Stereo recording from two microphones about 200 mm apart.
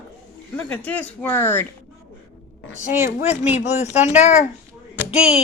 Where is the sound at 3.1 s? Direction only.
35° left (ahead or behind).